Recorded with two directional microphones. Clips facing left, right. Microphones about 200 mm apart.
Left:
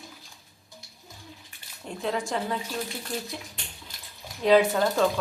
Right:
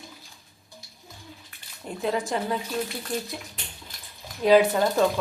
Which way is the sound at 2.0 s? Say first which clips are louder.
Right 2 dB; 5° right (ahead or behind).